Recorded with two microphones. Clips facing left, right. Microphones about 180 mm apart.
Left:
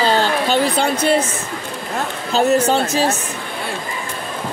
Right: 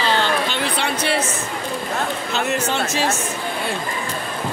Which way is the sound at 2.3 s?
35° left (ahead or behind).